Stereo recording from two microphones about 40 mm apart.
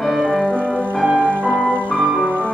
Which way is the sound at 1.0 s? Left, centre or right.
Right.